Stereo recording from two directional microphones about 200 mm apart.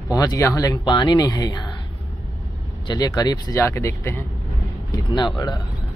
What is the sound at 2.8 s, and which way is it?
Speech, 20° left (ahead or behind).